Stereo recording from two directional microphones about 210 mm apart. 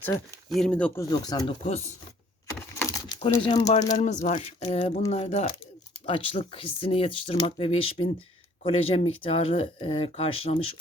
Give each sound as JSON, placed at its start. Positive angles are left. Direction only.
{"t": 0.5, "sound": "speech", "side_deg": 5}
{"t": 1.1, "sound": "speech", "side_deg": 20}
{"t": 2.7, "sound": "a sound", "side_deg": 15}
{"t": 3.3, "sound": "speech", "side_deg": 20}
{"t": 3.6, "sound": "speech", "side_deg": 35}